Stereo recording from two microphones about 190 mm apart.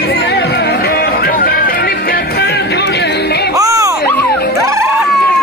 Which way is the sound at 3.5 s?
15° right (ahead or behind).